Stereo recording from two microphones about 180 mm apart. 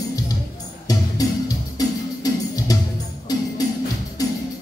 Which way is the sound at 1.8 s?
20° left (ahead or behind).